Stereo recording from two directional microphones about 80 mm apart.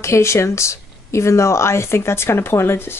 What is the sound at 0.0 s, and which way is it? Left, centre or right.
Speech, left.